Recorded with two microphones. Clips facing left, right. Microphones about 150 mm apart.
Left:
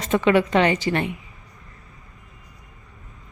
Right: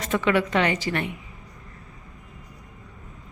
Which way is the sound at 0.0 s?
25° left (ahead or behind).